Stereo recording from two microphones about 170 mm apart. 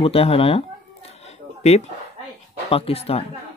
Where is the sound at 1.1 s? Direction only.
40° left (ahead or behind).